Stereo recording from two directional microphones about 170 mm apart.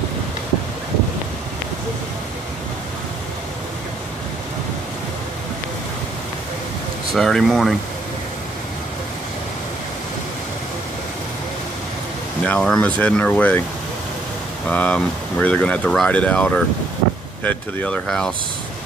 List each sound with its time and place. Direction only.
7.2 s speech: centre (ahead or behind)
12.4 s speech: 5° left (ahead or behind)
14.7 s speech: 10° left (ahead or behind)